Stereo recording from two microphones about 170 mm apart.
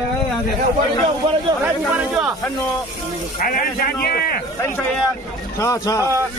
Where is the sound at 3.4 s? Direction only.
60° left (ahead or behind).